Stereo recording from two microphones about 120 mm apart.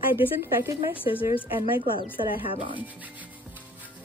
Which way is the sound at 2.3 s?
45° left (ahead or behind).